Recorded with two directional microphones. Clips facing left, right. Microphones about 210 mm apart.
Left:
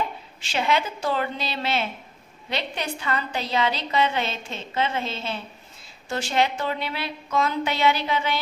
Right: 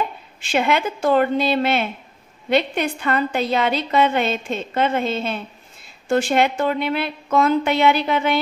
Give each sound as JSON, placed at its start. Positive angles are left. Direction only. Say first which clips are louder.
{"t": 0.4, "sound": "a woman's voice", "louder": "right 5 dB", "side_deg": -55}